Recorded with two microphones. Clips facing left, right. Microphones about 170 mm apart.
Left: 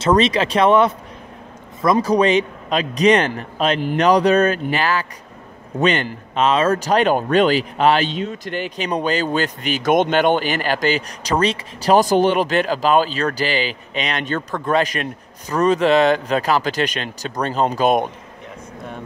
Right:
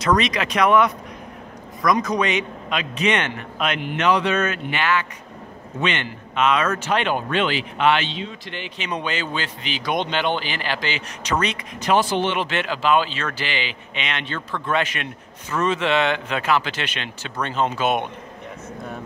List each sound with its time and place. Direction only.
0.0 s speech: 30° left (ahead or behind)